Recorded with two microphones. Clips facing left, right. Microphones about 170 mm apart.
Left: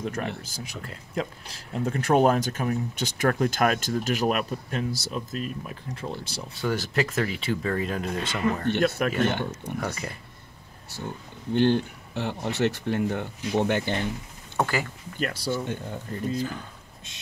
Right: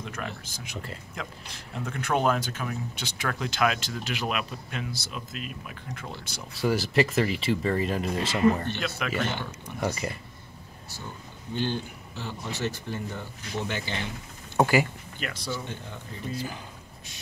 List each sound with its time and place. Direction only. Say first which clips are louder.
0.5 s speech: left 1 dB; 40° left (ahead or behind)
6.6 s speech: right 2 dB; 10° right (ahead or behind)
8.6 s speech: left 8 dB; 55° left (ahead or behind)
9.8 s speech: right 4 dB; 5° right (ahead or behind)
11.5 s speech: left 8 dB; 60° left (ahead or behind)
14.6 s speech: right 4 dB; 10° right (ahead or behind)
15.1 s speech: left 6 dB; 40° left (ahead or behind)
15.5 s speech: left 6 dB; 50° left (ahead or behind)